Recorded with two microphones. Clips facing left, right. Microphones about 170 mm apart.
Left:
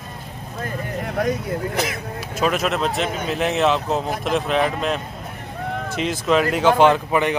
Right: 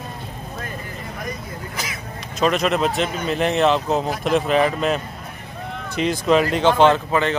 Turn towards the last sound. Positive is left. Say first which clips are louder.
# even
turn(degrees=15)  # may be behind; listen again after turning